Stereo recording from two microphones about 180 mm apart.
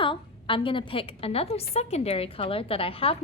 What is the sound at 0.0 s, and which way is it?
A woman's voice, 30° left (ahead or behind).